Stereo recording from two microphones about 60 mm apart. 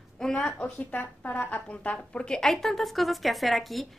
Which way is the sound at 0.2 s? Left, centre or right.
Centre.